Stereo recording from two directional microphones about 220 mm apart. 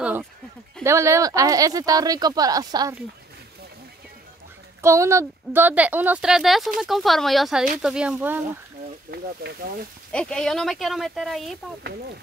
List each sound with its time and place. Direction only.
0.0 s a sound: 5° right (ahead or behind)
0.8 s speech: 15° right (ahead or behind)
4.8 s speech: 15° right (ahead or behind)
9.1 s speech: 45° right (ahead or behind)
10.1 s speech: 5° left (ahead or behind)